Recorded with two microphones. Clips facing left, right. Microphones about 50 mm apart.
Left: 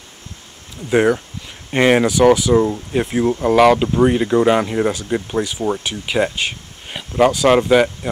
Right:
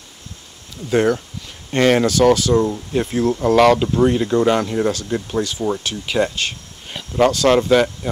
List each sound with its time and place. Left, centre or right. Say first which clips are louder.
0.8 s speech: left 2 dB; centre